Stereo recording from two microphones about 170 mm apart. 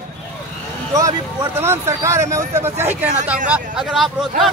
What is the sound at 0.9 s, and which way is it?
Speech, 20° right (ahead or behind).